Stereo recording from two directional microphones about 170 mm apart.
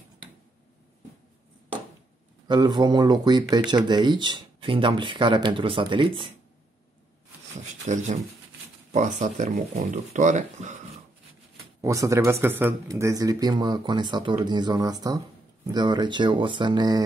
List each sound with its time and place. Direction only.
2.4 s speech: 25° right (ahead or behind)
7.8 s speech: 45° right (ahead or behind)
11.8 s speech: 20° right (ahead or behind)